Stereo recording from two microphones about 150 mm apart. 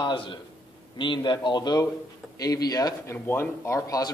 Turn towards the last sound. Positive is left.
turn(degrees=20)  # may be behind; listen again after turning